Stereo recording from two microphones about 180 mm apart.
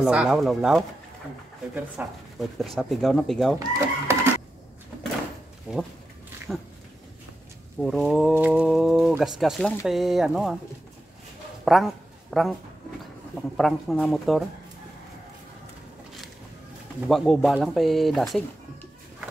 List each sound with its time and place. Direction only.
0.0 s speech: 5° right (ahead or behind)
2.0 s speech: 10° right (ahead or behind)
3.5 s chicken: 15° right (ahead or behind)
5.7 s speech: 5° right (ahead or behind)
7.8 s speech: centre (ahead or behind)
11.6 s a sound: centre (ahead or behind)
13.6 s speech: centre (ahead or behind)
17.1 s speech: centre (ahead or behind)